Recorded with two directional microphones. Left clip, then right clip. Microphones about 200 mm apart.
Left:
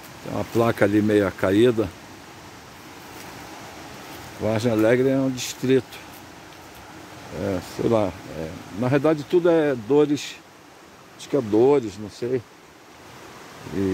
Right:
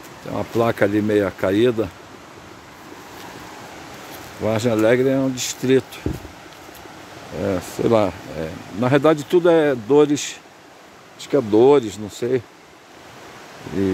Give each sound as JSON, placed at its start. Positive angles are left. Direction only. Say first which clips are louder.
{"t": 0.3, "sound": "speech", "louder": "right 2 dB", "side_deg": 5}
{"t": 4.4, "sound": "speech", "louder": "right 3 dB", "side_deg": -5}
{"t": 7.3, "sound": "speech", "louder": "right 4 dB", "side_deg": -15}